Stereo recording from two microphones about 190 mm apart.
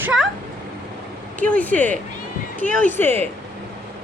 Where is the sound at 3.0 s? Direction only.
10° left (ahead or behind).